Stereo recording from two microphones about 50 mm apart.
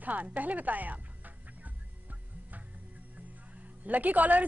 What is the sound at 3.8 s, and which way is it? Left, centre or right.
Speech, right.